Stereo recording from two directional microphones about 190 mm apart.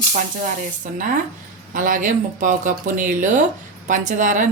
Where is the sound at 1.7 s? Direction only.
45° right (ahead or behind).